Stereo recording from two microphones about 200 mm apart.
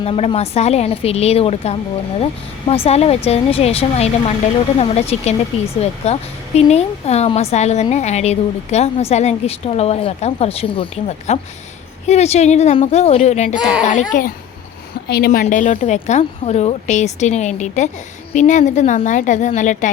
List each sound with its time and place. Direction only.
0.0 s speech: 30° left (ahead or behind)
13.6 s speech: 5° right (ahead or behind)
13.8 s speech: 40° left (ahead or behind)